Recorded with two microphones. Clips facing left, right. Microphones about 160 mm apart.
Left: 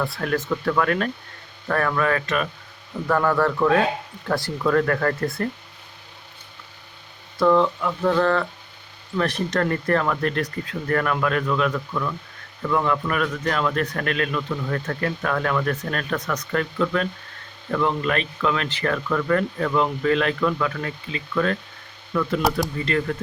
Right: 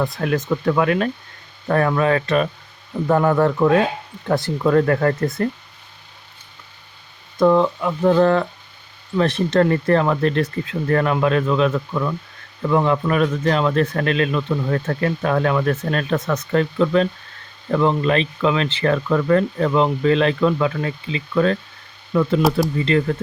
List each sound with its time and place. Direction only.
0.0 s speech: 20° right (ahead or behind)
7.3 s speech: 20° right (ahead or behind)